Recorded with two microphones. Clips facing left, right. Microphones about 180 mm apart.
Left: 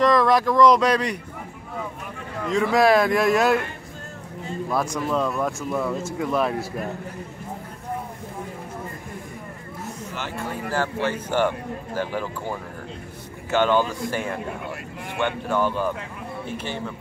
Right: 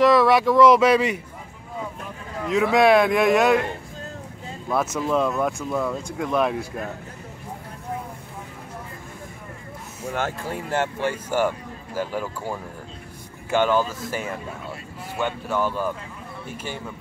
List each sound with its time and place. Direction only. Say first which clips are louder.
0.0 s speech: right 2 dB; 5° right (ahead or behind)
2.4 s speech: right 1 dB; centre (ahead or behind)
4.6 s speech: right 2 dB; 5° right (ahead or behind)
10.7 s a man's voice: right 1 dB; 25° right (ahead or behind)
11.1 s speech: left 1 dB; 10° right (ahead or behind)